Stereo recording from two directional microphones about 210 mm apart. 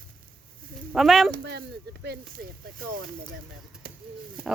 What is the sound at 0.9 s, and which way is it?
Speech, centre (ahead or behind).